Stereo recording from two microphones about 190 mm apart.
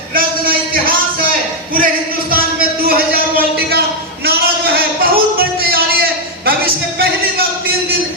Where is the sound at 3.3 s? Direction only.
55° right (ahead or behind).